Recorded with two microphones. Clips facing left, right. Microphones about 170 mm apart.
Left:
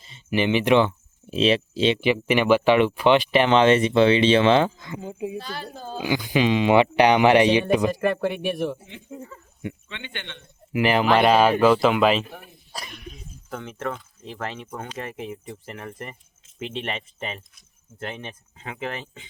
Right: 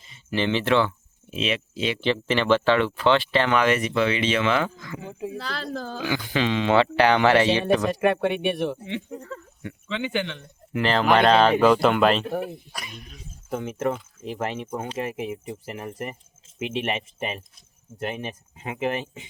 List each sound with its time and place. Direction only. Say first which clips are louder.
0.3 s speech: left 3 dB; 15° left (ahead or behind)
1.3 s speech: left 7 dB; 35° left (ahead or behind)
2.0 s speech: left 3 dB; 10° left (ahead or behind)
5.0 s speech: left 3 dB; 15° left (ahead or behind)
5.4 s speech: right 3 dB; 90° right
6.1 s speech: left 4 dB; 15° left (ahead or behind)
7.9 s speech: right 1 dB; centre (ahead or behind)
8.8 s speech: right 6 dB; 85° right
10.7 s speech: left 1 dB; 10° left (ahead or behind)
12.2 s speech: right 13 dB; 65° right (ahead or behind)
13.5 s speech: right 5 dB; 20° right (ahead or behind)
15.0 s speech: right 4 dB; 10° right (ahead or behind)